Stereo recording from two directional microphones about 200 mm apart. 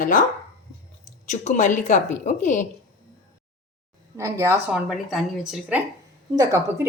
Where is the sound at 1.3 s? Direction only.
40° left (ahead or behind).